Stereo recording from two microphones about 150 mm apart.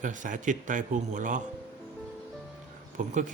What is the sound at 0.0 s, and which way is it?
A man's voice, 60° right (ahead or behind).